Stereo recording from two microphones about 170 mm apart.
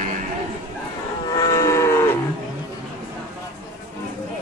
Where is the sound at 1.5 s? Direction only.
15° left (ahead or behind).